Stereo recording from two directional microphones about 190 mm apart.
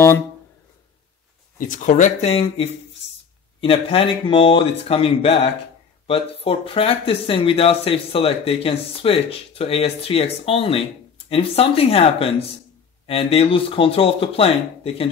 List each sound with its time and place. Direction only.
1.6 s speech: 45° left (ahead or behind)